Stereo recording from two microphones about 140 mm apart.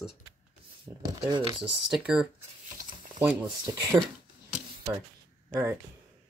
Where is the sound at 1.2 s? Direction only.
35° right (ahead or behind).